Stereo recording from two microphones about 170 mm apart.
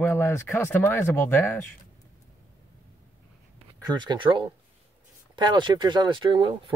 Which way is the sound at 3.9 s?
25° right (ahead or behind).